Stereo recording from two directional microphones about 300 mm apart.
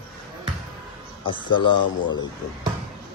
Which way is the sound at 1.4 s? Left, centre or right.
Centre.